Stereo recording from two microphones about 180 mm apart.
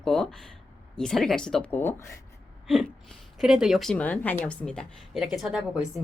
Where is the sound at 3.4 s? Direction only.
Centre (ahead or behind).